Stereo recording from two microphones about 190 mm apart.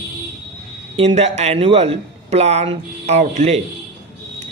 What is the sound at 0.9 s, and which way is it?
A man's voice, 30° right (ahead or behind).